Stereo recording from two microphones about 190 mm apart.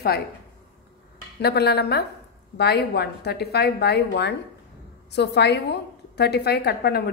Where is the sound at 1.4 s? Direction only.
60° left (ahead or behind).